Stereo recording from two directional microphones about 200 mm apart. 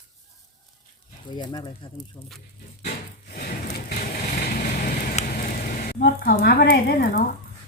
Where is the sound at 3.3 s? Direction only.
50° left (ahead or behind).